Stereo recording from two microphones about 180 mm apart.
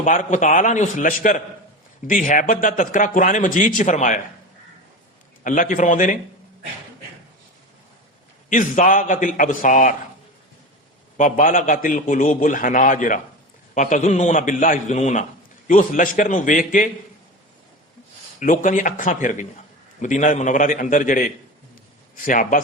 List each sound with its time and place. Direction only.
0.0 s a man's voice: 45° left (ahead or behind)
5.4 s a man's voice: 45° left (ahead or behind)
8.4 s a man's voice: 45° left (ahead or behind)
11.2 s a man's voice: 45° left (ahead or behind)
18.3 s a man's voice: 45° left (ahead or behind)